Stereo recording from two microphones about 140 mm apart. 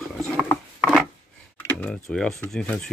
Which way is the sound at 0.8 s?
Centre (ahead or behind).